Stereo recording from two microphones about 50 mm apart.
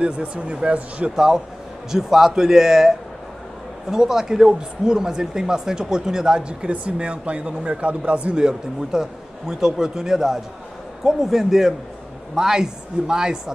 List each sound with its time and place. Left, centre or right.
0.0 s speech: right
1.1 s speech: centre